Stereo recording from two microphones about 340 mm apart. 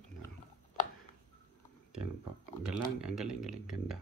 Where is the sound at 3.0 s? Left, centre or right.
Centre.